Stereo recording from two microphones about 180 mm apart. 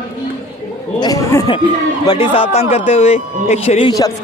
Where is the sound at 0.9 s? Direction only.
20° left (ahead or behind).